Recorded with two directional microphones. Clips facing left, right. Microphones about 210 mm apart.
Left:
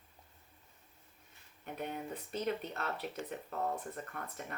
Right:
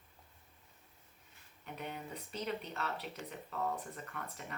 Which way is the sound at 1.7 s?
45° left (ahead or behind).